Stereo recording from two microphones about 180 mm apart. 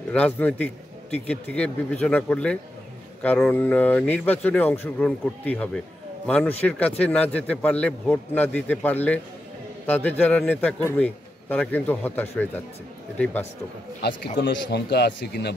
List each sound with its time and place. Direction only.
0.1 s a man's voice: 5° left (ahead or behind)
14.3 s speech: 60° left (ahead or behind)